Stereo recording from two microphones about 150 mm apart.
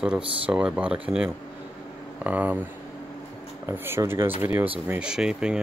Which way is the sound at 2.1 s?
10° right (ahead or behind).